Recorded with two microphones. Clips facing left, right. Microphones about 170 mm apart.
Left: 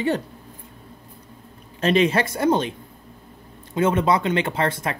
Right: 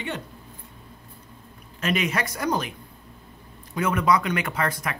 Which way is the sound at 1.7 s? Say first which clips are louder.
Left 7 dB; 30° left (ahead or behind).